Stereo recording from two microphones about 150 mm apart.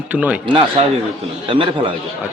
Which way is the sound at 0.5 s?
40° right (ahead or behind).